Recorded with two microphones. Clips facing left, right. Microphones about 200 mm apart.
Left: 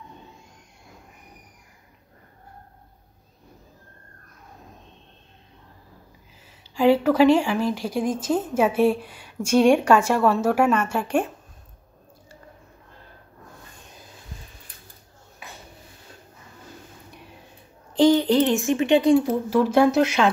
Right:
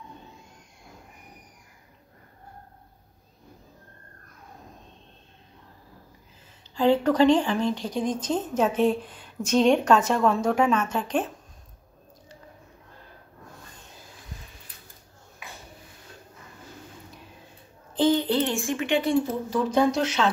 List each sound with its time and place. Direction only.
6.7 s a woman's voice: 10° left (ahead or behind)
17.9 s a sound: 15° left (ahead or behind)
19.8 s a woman's voice: 10° left (ahead or behind)